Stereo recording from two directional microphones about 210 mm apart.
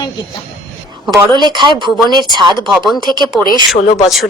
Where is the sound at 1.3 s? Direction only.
20° right (ahead or behind).